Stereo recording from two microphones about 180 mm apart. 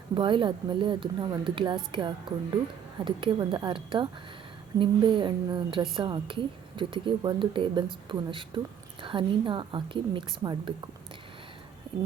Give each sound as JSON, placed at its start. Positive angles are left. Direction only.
{"t": 0.1, "sound": "a woman's voice", "side_deg": -25}